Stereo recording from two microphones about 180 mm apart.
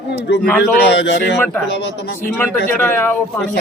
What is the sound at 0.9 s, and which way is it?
Speech, 75° left (ahead or behind).